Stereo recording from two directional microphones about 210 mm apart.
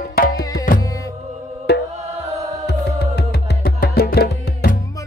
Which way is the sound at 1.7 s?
50° left (ahead or behind).